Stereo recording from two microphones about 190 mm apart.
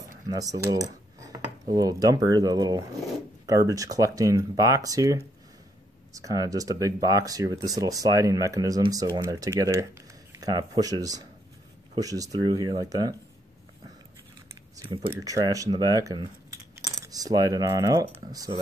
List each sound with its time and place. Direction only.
0.3 s speech: 20° right (ahead or behind)
14.8 s speech: 25° right (ahead or behind)